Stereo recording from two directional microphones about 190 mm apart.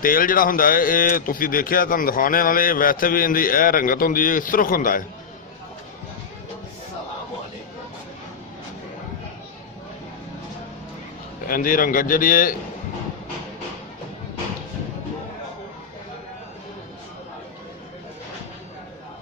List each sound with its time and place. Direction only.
0.0 s speech: 50° left (ahead or behind)
11.4 s speech: 50° left (ahead or behind)